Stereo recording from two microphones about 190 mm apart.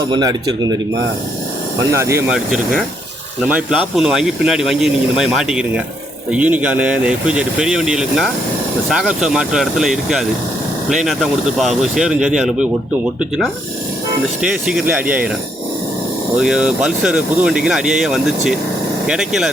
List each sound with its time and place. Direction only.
0.1 s speech: 20° right (ahead or behind)
1.9 s speech: 15° right (ahead or behind)
3.4 s speech: 5° right (ahead or behind)
14.4 s speech: 5° right (ahead or behind)
16.4 s speech: 5° right (ahead or behind)